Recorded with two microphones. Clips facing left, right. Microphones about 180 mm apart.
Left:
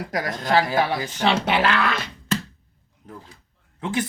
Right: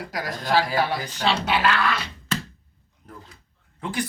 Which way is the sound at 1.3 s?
55° left (ahead or behind).